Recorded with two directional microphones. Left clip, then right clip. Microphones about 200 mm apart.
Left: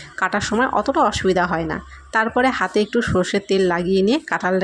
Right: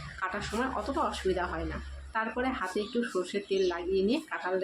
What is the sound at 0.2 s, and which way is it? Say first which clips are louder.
Speech: left 14 dB; 45° left (ahead or behind).